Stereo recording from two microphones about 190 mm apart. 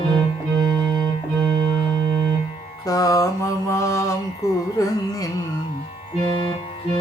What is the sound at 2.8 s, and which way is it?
Mantra, 20° left (ahead or behind).